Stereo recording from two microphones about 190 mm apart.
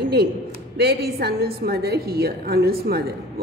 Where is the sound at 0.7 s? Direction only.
60° right (ahead or behind).